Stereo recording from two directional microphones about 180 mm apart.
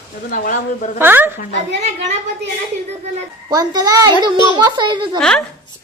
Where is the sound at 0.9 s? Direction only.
10° right (ahead or behind).